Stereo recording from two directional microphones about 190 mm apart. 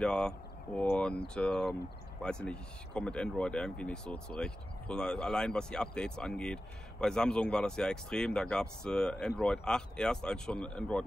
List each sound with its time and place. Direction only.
0.0 s speech: 5° left (ahead or behind)